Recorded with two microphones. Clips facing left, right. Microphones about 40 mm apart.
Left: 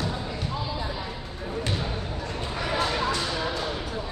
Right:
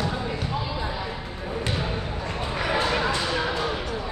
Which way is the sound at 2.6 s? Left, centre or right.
Right.